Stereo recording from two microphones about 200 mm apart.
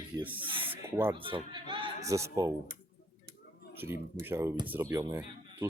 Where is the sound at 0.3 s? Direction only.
25° right (ahead or behind).